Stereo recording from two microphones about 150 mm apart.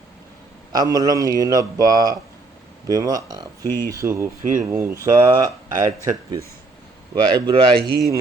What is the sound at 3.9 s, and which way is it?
Speech, 20° right (ahead or behind).